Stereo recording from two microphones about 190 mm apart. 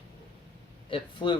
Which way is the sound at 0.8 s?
25° left (ahead or behind).